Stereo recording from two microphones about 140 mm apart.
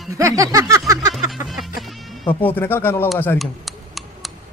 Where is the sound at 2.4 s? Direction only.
15° left (ahead or behind).